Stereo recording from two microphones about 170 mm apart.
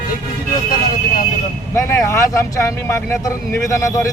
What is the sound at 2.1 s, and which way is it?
Speech, 20° left (ahead or behind).